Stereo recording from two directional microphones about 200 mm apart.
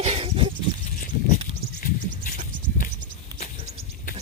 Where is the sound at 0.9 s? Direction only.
45° left (ahead or behind).